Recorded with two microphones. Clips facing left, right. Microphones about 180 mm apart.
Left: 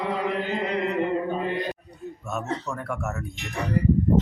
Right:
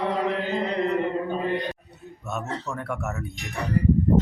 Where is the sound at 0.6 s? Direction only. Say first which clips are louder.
Right 1 dB; 35° right (ahead or behind).